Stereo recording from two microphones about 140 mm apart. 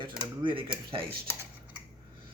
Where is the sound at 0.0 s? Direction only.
35° right (ahead or behind).